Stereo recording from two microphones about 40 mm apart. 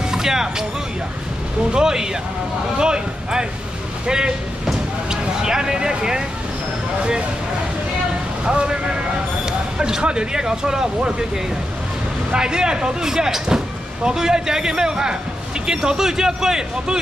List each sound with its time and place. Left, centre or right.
0.1 s speech: centre
1.7 s speech: centre
5.1 s speech: centre
8.5 s speech: right
9.5 s a sound: centre
10.0 s speech: right
12.3 s speech: centre